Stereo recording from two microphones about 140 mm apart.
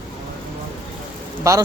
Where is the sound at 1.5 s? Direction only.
20° right (ahead or behind).